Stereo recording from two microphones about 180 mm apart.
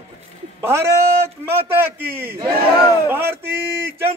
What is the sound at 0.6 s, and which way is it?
Speech, 15° right (ahead or behind).